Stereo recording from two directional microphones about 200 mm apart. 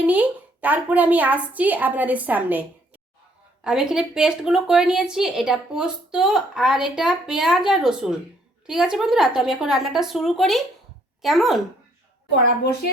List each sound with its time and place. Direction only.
0.0 s a woman's voice: 10° right (ahead or behind)